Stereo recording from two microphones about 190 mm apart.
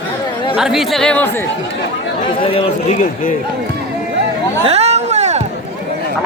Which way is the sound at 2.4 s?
30° left (ahead or behind).